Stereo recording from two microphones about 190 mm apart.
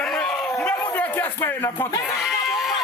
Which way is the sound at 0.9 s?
10° left (ahead or behind).